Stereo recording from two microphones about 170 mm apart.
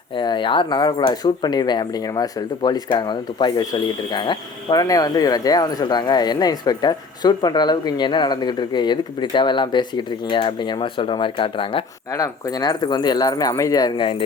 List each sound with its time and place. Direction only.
0.2 s speech: 25° left (ahead or behind)
12.1 s speech: 20° left (ahead or behind)